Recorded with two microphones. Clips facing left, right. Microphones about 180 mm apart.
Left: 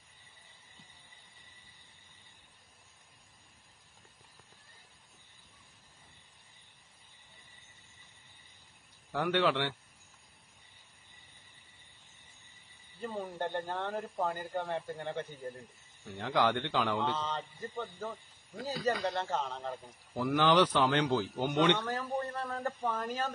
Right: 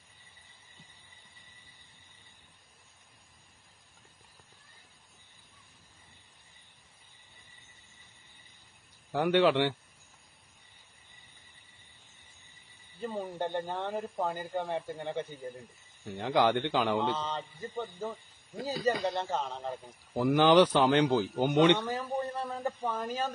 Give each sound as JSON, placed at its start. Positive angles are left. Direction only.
{"t": 9.1, "sound": "a man's voice", "side_deg": -15}
{"t": 13.0, "sound": "a man's voice", "side_deg": -10}
{"t": 18.6, "sound": "speech", "side_deg": -25}
{"t": 19.1, "sound": "a man's voice", "side_deg": -5}